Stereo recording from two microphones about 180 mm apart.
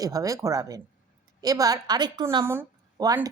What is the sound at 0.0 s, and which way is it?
A woman's voice, 20° right (ahead or behind).